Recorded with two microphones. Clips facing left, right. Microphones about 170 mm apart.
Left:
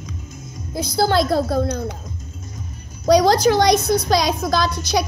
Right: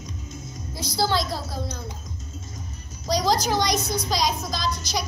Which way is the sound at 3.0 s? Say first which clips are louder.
Left 9 dB; 65° left (ahead or behind).